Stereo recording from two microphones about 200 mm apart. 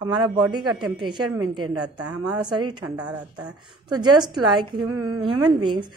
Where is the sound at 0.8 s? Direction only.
20° right (ahead or behind).